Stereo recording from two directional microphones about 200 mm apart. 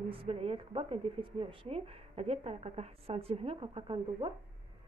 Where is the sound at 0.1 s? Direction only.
30° right (ahead or behind).